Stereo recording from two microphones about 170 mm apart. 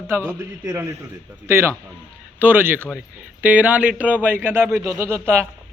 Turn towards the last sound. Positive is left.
turn(degrees=-15)  # may be behind; listen again after turning